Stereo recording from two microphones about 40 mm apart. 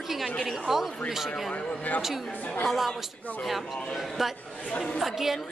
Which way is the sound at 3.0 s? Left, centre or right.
Centre.